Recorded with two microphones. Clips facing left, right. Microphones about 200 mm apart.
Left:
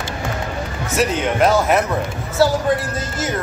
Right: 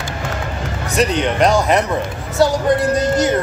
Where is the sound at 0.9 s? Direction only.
5° left (ahead or behind).